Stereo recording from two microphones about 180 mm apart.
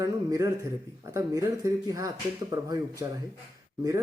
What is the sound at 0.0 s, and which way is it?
Speech, 20° right (ahead or behind).